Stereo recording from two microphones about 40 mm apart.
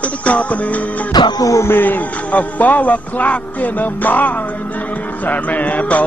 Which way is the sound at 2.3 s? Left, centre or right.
Left.